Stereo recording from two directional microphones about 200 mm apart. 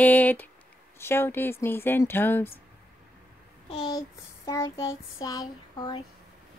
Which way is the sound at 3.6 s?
25° left (ahead or behind).